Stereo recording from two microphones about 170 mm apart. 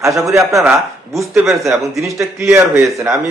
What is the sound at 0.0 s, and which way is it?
A man's voice, 20° right (ahead or behind).